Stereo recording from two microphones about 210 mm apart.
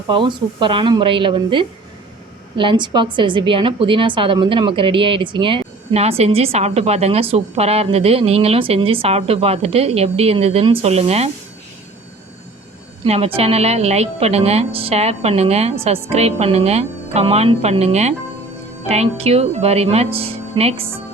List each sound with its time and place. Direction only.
0.1 s a woman's voice: 25° right (ahead or behind)
13.1 s a woman's voice: 25° right (ahead or behind)